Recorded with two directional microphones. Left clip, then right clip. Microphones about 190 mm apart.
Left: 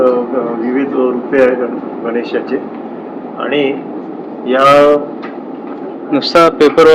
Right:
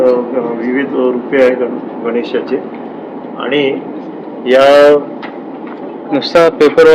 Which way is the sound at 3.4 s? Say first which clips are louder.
Right 1 dB; 60° right (ahead or behind).